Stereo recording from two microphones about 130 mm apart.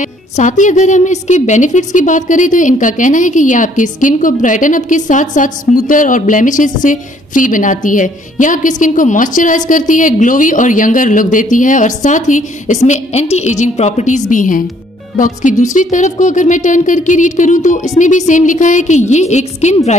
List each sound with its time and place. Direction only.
0.0 s a woman's voice: 70° left (ahead or behind)
14.3 s a woman's voice: 85° left; by 20.0 s 60° left (ahead or behind)